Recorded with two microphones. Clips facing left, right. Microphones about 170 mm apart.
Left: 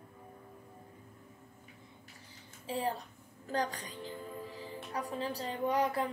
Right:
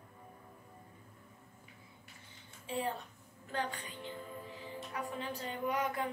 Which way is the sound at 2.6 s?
35° left (ahead or behind).